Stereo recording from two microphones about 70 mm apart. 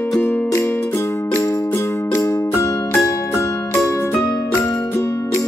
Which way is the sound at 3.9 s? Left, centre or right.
Left.